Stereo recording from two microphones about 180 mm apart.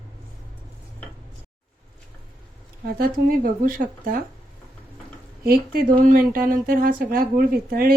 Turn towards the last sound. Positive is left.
turn(degrees=-55)  # may be behind; listen again after turning